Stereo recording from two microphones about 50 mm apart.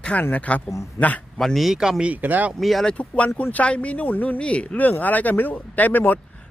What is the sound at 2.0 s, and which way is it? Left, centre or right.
Speech, right.